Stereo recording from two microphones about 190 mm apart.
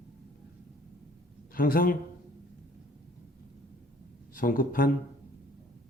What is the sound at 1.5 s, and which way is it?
Speech, 50° left (ahead or behind).